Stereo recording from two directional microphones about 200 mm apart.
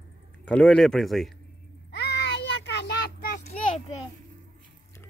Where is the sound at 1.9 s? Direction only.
60° left (ahead or behind).